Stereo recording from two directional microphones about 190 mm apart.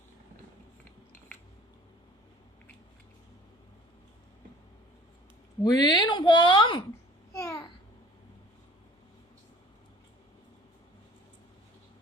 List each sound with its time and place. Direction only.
5.6 s speech: 20° left (ahead or behind)
7.3 s babbling: 15° left (ahead or behind)